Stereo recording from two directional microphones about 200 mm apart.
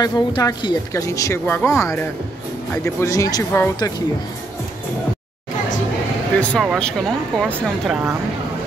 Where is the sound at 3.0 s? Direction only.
15° left (ahead or behind).